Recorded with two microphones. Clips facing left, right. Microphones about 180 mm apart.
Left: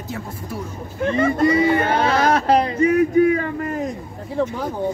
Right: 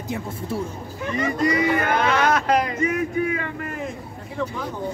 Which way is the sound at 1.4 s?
25° left (ahead or behind).